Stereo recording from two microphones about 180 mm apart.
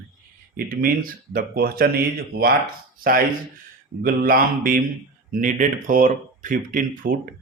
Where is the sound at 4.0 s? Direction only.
55° right (ahead or behind).